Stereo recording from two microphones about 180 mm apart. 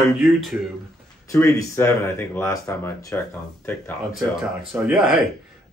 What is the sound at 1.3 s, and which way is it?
Speech, 15° left (ahead or behind).